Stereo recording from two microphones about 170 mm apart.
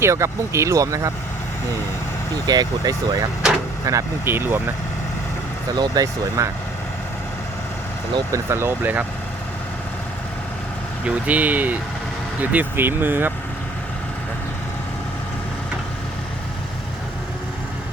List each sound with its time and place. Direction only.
0.0 s speech: 15° right (ahead or behind)
2.5 s speech: 25° right (ahead or behind)
3.4 s vehicle: 5° right (ahead or behind)
3.8 s speech: 15° right (ahead or behind)
5.7 s speech: 25° right (ahead or behind)
8.1 s speech: 15° right (ahead or behind)
11.0 s speech: 10° right (ahead or behind)